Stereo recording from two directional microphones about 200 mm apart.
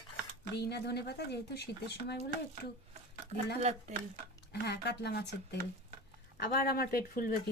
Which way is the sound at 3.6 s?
30° right (ahead or behind).